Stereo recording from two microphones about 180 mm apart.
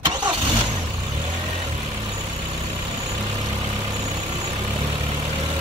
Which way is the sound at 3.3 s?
20° right (ahead or behind).